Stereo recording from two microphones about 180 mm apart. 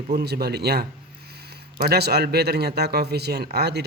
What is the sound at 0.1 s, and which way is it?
Speech, 65° right (ahead or behind).